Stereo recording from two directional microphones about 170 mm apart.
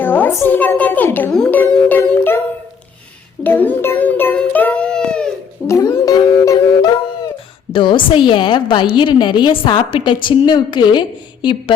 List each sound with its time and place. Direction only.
0.0 s a child's voice: 10° left (ahead or behind)
3.4 s a child's voice: 10° left (ahead or behind)
5.6 s a sound: 15° left (ahead or behind)
7.7 s a woman's voice: 30° left (ahead or behind)